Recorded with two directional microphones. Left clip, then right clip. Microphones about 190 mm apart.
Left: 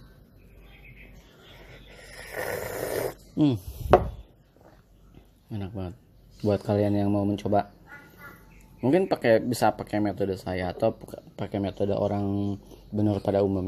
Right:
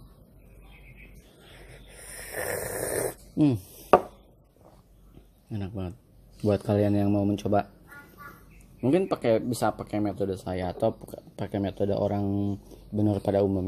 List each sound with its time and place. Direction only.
1.9 s snoring: centre (ahead or behind)
5.5 s a sound: 5° right (ahead or behind)
6.4 s speech: 5° right (ahead or behind)
8.8 s speech: 5° left (ahead or behind)